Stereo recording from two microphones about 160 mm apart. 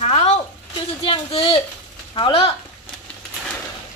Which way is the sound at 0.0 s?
40° left (ahead or behind).